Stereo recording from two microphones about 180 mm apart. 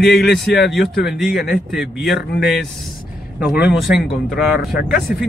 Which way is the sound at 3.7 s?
5° right (ahead or behind).